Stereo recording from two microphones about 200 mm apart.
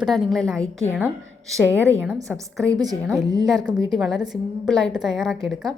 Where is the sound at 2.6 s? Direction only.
20° right (ahead or behind).